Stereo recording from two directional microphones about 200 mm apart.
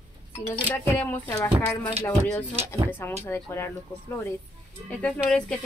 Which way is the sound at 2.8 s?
10° left (ahead or behind).